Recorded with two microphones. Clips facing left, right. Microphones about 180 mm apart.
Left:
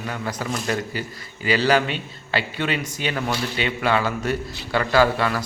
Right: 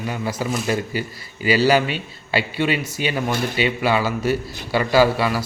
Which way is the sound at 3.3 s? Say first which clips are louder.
Right 3 dB; 50° right (ahead or behind).